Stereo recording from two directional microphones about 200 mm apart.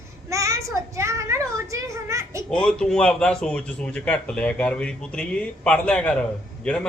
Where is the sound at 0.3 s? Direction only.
15° right (ahead or behind).